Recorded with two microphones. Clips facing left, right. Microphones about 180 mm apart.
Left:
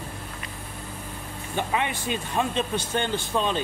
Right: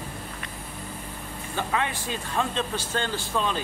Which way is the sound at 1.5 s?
20° left (ahead or behind).